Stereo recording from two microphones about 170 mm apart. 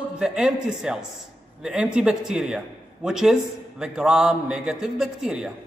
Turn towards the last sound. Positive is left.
turn(degrees=-5)  # may be behind; listen again after turning